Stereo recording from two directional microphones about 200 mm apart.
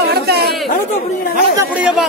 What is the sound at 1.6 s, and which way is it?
Speech, 5° right (ahead or behind).